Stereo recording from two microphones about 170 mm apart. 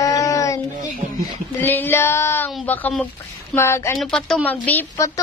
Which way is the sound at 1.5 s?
10° left (ahead or behind).